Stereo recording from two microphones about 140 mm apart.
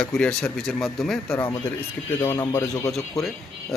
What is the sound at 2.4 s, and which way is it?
Speech, 25° left (ahead or behind).